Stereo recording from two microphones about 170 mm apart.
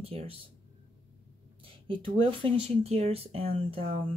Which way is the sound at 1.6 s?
30° right (ahead or behind).